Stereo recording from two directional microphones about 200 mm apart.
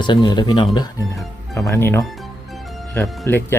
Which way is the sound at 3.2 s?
10° left (ahead or behind).